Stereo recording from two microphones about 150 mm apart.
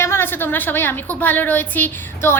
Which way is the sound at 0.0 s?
15° left (ahead or behind).